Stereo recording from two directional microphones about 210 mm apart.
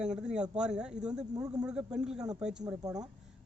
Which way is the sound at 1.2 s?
20° right (ahead or behind).